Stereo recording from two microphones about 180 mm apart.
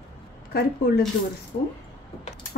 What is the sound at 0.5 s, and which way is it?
Speech, 60° left (ahead or behind).